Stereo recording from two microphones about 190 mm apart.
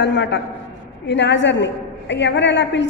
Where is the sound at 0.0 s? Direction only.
70° left (ahead or behind).